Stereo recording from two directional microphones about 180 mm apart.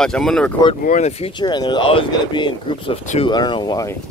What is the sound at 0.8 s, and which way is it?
Speech, 40° left (ahead or behind).